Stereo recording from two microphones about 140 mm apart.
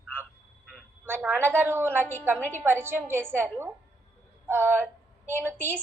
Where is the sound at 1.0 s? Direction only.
15° right (ahead or behind).